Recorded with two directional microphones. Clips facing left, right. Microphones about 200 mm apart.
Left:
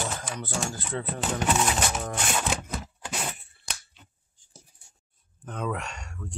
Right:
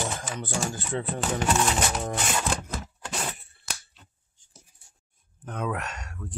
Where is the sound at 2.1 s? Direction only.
Centre (ahead or behind).